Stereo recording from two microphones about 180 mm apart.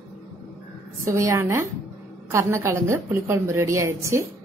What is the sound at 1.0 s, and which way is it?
A woman's voice, 15° right (ahead or behind).